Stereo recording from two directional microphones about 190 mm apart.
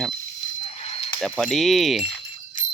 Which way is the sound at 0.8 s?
30° left (ahead or behind).